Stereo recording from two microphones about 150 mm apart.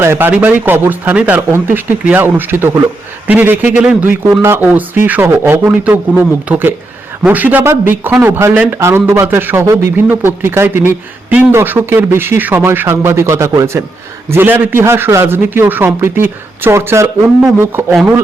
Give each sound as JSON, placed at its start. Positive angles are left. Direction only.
{"t": 0.0, "sound": "speech", "side_deg": -15}